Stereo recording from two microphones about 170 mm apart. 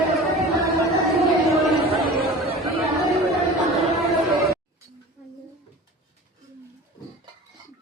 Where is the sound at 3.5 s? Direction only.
40° right (ahead or behind).